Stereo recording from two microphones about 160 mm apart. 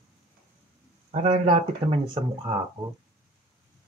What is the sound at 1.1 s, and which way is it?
Speech, 40° right (ahead or behind).